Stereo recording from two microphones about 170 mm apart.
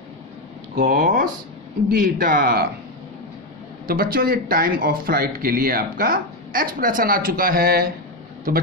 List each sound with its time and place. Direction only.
0.7 s speech: 55° right (ahead or behind)
3.8 s speech: 60° right (ahead or behind)